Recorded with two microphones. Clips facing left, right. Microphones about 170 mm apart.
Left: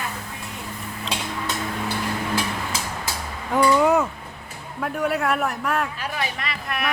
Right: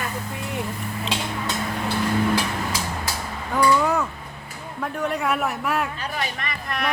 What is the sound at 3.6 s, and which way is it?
Speech, 20° left (ahead or behind).